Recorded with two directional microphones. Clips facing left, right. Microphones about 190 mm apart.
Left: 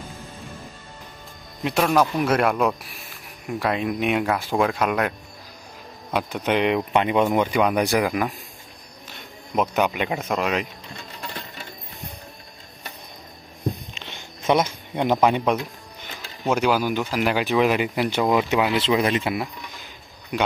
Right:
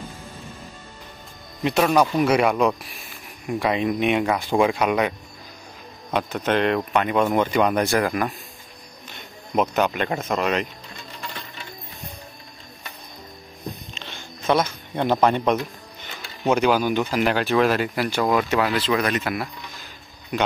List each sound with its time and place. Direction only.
1.6 s speech: 5° left (ahead or behind)
6.1 s speech: 10° left (ahead or behind)
9.8 s speech: 10° left (ahead or behind)
13.9 s a sound: 15° left (ahead or behind)
16.4 s speech: 5° left (ahead or behind)
19.0 s speech: 25° left (ahead or behind)